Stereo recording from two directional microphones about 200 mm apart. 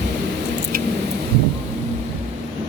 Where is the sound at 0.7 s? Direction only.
45° right (ahead or behind).